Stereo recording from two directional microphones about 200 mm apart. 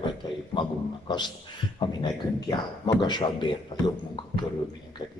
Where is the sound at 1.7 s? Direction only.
20° left (ahead or behind).